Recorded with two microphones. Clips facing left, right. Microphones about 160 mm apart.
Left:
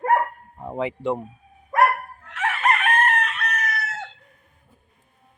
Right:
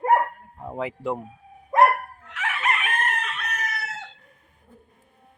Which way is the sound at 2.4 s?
55° left (ahead or behind).